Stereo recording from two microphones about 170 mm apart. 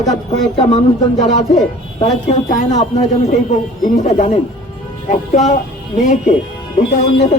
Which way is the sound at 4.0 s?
40° left (ahead or behind).